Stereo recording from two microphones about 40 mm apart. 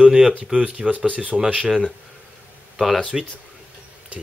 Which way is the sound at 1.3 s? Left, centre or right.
Right.